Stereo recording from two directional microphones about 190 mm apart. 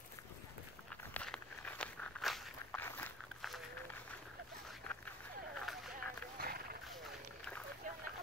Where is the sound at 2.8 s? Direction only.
10° left (ahead or behind).